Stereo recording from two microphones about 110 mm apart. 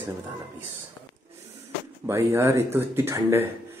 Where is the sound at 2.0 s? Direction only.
25° right (ahead or behind).